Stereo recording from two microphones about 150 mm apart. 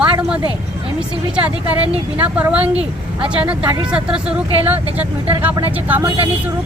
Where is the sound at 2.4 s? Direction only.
10° right (ahead or behind).